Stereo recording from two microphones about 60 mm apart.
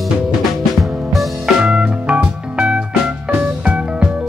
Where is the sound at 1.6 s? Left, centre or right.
Centre.